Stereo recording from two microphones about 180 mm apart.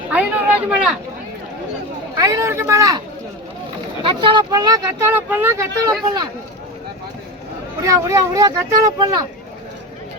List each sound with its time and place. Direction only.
0.1 s a sound: 10° right (ahead or behind)
2.1 s speech: 20° right (ahead or behind)
4.0 s speech: 25° right (ahead or behind)
7.8 s speech: 15° right (ahead or behind)